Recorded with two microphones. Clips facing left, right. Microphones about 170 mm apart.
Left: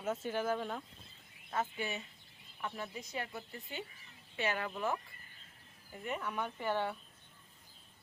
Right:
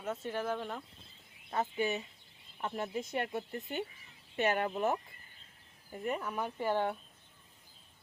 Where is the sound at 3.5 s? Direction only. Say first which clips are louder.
Right 7 dB; 50° right (ahead or behind).